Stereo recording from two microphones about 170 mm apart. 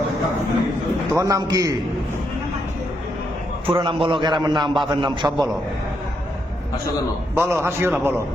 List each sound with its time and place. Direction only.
1.1 s a man's voice: 20° right (ahead or behind)
3.7 s a man's voice: 30° right (ahead or behind)
7.3 s a man's voice: 15° right (ahead or behind)